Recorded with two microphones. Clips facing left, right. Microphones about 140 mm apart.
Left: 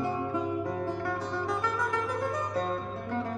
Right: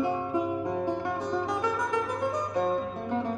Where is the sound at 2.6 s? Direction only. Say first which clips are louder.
Right 4 dB; 15° right (ahead or behind).